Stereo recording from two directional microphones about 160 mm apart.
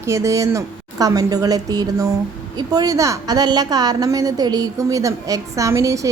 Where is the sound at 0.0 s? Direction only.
20° right (ahead or behind).